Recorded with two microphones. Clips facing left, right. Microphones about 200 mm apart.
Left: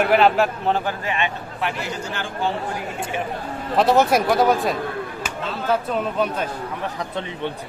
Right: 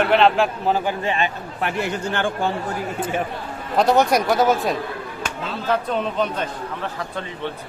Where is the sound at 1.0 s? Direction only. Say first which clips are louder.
Right 2 dB; 35° right (ahead or behind).